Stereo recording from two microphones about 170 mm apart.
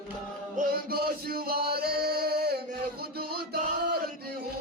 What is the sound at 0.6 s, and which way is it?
Music, 60° right (ahead or behind).